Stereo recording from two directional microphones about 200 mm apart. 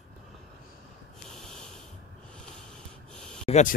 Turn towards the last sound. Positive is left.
turn(degrees=35)  # may be behind; listen again after turning